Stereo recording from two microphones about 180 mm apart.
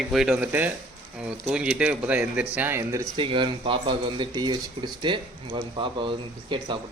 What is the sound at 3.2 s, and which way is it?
Speech, 30° right (ahead or behind).